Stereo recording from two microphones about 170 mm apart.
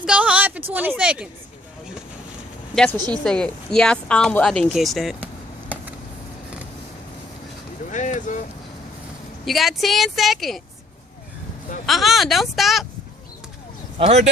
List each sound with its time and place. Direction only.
0.0 s a sound: 5° right (ahead or behind)
0.7 s speech: 10° right (ahead or behind)
2.7 s speech: 5° left (ahead or behind)
7.9 s a sound: 45° left (ahead or behind)
9.5 s speech: centre (ahead or behind)
11.9 s speech: centre (ahead or behind)
14.0 s speech: 40° right (ahead or behind)